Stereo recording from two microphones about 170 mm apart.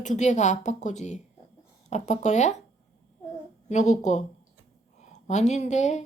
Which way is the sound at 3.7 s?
45° left (ahead or behind).